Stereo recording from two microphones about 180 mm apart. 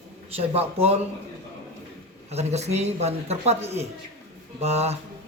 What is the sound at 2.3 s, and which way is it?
A man's voice, 40° right (ahead or behind).